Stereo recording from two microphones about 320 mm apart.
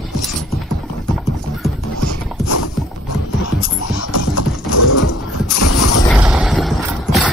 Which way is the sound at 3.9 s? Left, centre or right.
Left.